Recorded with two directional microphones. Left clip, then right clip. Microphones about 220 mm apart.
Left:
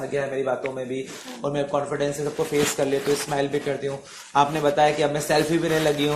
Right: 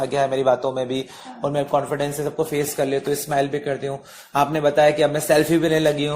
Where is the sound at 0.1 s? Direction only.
55° right (ahead or behind).